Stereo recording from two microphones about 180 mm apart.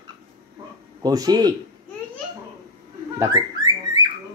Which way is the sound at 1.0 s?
20° right (ahead or behind).